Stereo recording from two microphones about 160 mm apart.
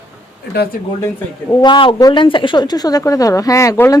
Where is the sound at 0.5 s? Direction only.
90° left.